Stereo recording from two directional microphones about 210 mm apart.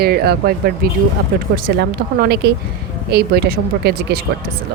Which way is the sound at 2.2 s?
50° right (ahead or behind).